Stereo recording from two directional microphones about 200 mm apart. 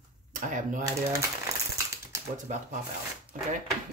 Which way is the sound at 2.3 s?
35° right (ahead or behind).